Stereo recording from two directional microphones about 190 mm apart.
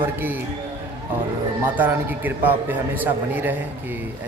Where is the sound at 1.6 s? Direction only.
10° right (ahead or behind).